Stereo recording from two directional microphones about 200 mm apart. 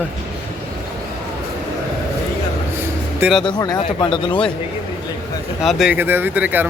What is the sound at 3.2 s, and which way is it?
Speech, centre (ahead or behind).